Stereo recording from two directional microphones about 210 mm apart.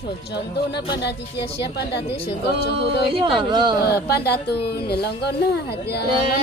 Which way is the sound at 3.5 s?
20° right (ahead or behind).